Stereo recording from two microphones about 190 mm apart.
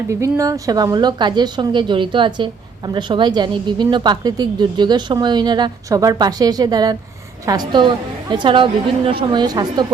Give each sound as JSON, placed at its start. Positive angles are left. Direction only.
{"t": 0.1, "sound": "speech", "side_deg": -15}